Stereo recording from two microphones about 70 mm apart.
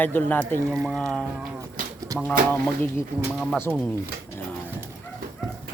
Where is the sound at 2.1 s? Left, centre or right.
Right.